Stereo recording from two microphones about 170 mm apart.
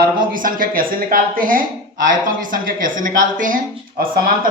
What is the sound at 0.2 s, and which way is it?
Speech, 55° right (ahead or behind).